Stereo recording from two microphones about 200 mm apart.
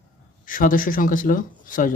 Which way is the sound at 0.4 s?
40° left (ahead or behind).